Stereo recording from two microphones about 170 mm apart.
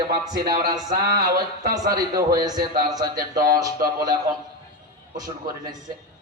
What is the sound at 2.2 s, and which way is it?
Speech, 20° right (ahead or behind).